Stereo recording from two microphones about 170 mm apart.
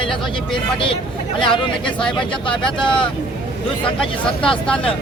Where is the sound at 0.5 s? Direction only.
30° left (ahead or behind).